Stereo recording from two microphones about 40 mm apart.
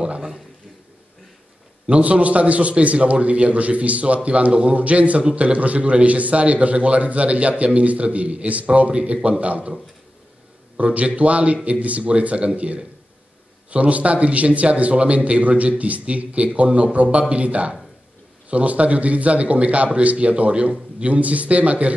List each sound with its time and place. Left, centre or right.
1.9 s a man's voice: right
10.8 s a man's voice: right